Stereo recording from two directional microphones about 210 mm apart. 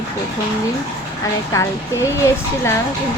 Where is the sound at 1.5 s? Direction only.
15° left (ahead or behind).